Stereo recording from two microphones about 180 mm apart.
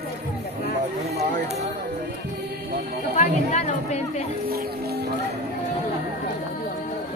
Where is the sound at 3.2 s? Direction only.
40° left (ahead or behind).